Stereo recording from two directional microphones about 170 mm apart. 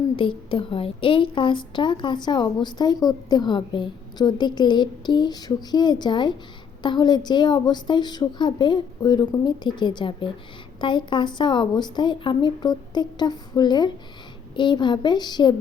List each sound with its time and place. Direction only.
0.2 s a woman's voice: 30° left (ahead or behind)